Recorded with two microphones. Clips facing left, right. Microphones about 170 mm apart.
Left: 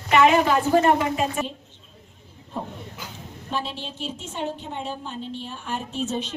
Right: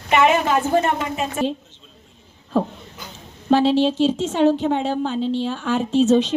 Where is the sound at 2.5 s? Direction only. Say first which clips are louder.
Right 11 dB; 90° right.